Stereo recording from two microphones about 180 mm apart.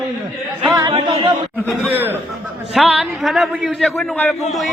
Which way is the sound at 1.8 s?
10° right (ahead or behind).